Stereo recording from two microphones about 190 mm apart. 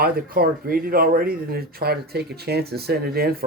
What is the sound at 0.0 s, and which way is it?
Speech, 50° right (ahead or behind).